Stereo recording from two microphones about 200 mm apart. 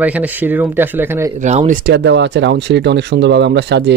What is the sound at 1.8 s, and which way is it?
Speech, 60° right (ahead or behind).